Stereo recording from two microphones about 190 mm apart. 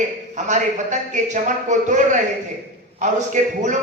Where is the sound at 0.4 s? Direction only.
40° right (ahead or behind).